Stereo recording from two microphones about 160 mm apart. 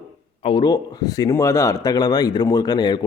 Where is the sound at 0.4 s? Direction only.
30° left (ahead or behind).